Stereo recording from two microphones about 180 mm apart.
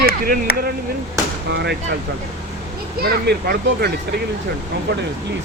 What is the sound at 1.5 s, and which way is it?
Speech, 70° right (ahead or behind).